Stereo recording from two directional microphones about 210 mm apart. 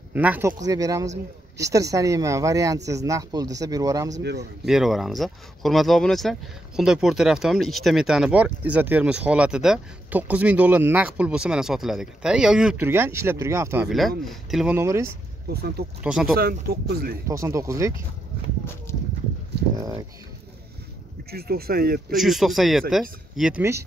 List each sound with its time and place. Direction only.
0.1 s speech: 10° right (ahead or behind)
4.2 s speech: 55° right (ahead or behind)
4.6 s speech: centre (ahead or behind)
13.8 s speech: centre (ahead or behind)
14.8 s speech: 10° right (ahead or behind)
15.5 s speech: 50° right (ahead or behind)
16.0 s speech: 5° right (ahead or behind)
16.3 s speech: 45° right (ahead or behind)
17.3 s speech: 15° right (ahead or behind)
19.8 s speech: 20° right (ahead or behind)
21.3 s speech: 45° right (ahead or behind)
22.1 s speech: centre (ahead or behind)